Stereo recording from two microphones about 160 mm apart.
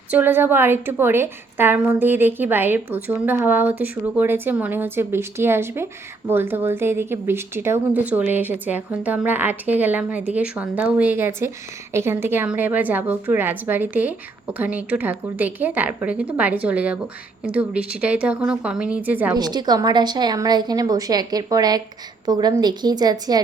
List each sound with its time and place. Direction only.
0.1 s a woman's voice: 10° right (ahead or behind)
19.3 s a woman's voice: 25° right (ahead or behind)